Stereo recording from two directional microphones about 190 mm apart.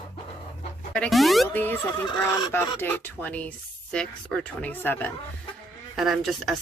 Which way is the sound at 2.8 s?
10° left (ahead or behind).